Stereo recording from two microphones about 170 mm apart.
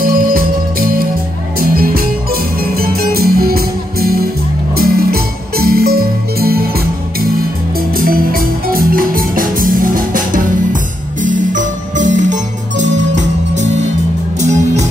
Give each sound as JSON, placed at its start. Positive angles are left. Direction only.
{"t": 0.0, "sound": "music", "side_deg": -60}
{"t": 7.9, "sound": "music", "side_deg": -60}
{"t": 13.6, "sound": "music", "side_deg": -40}